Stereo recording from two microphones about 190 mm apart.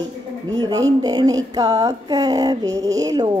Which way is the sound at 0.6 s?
20° right (ahead or behind).